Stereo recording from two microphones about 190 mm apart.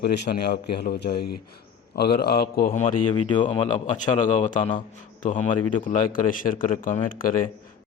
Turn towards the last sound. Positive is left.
turn(degrees=45)  # may be behind; listen again after turning